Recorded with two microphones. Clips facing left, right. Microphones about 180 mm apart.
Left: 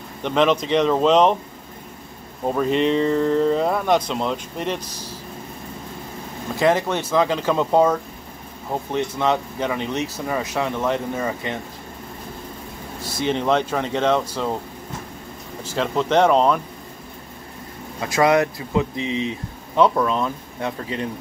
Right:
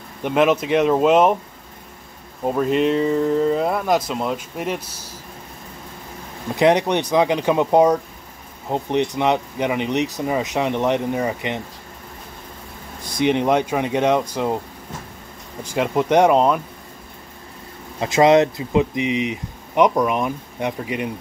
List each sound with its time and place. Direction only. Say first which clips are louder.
0.2 s speech: right 1 dB; 10° right (ahead or behind)
2.4 s speech: right 1 dB; 5° right (ahead or behind)
6.5 s speech: right 3 dB; 20° right (ahead or behind)
13.2 s speech: right 3 dB; 15° right (ahead or behind)
15.6 s speech: right 2 dB; 15° right (ahead or behind)
18.0 s speech: right 4 dB; 20° right (ahead or behind)